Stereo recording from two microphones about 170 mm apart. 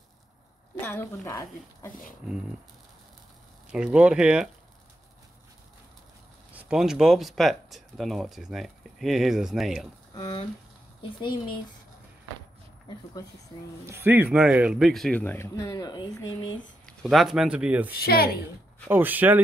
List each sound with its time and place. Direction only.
0.7 s speech: 10° left (ahead or behind)
2.2 s speech: 5° right (ahead or behind)
3.7 s speech: 5° right (ahead or behind)
6.5 s speech: 5° right (ahead or behind)
10.1 s speech: 20° left (ahead or behind)
13.8 s speech: 10° right (ahead or behind); by 16.4 s 20° left (ahead or behind)
16.8 s speech: centre (ahead or behind)
17.9 s speech: 65° left (ahead or behind)
18.4 s speech: 10° right (ahead or behind)